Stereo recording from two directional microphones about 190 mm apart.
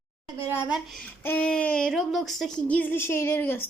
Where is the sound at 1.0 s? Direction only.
10° left (ahead or behind).